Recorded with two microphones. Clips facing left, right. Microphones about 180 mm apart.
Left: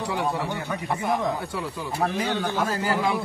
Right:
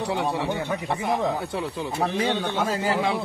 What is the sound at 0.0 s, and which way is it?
A man's voice, 25° right (ahead or behind).